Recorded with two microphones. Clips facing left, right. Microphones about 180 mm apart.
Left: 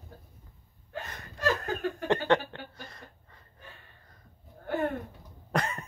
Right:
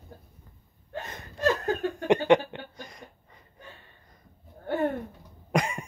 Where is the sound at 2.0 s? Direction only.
15° right (ahead or behind).